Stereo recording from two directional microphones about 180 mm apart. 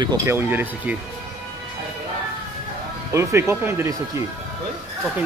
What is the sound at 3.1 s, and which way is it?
Speech, 15° right (ahead or behind).